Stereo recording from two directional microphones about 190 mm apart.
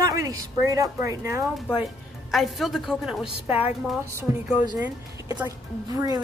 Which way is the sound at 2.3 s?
Centre (ahead or behind).